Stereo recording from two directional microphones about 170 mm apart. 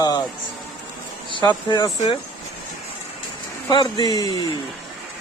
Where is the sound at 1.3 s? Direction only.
25° left (ahead or behind).